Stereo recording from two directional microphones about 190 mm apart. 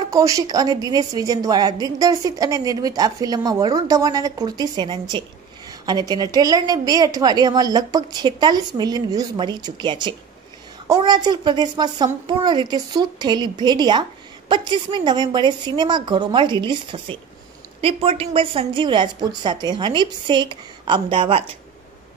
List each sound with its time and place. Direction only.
0.1 s a woman's voice: 15° right (ahead or behind)